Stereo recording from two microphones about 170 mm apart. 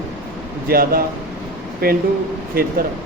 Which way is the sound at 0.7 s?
60° right (ahead or behind).